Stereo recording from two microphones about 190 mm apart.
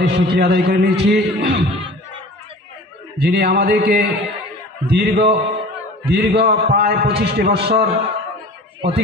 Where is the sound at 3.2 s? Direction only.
55° right (ahead or behind).